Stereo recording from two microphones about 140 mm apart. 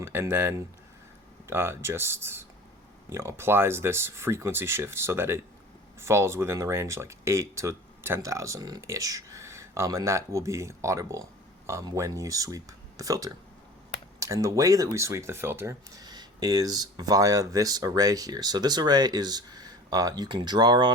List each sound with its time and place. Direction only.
0.0 s speech: 15° right (ahead or behind)